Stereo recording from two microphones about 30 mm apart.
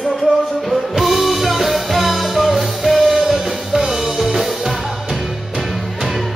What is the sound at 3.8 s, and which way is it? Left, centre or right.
Music, centre.